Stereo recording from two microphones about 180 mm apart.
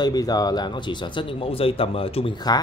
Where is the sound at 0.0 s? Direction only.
20° left (ahead or behind).